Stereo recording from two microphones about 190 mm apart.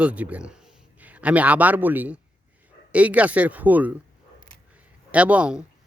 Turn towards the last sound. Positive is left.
turn(degrees=-5)  # may be behind; listen again after turning